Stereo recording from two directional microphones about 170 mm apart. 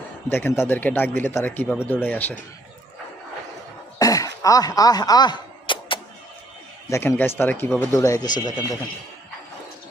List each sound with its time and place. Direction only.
0.3 s speech: 15° left (ahead or behind)
3.9 s a sound: 20° left (ahead or behind)
6.9 s speech: 15° left (ahead or behind)